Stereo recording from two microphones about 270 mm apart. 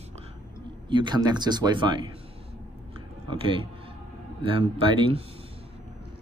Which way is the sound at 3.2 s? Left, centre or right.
Centre.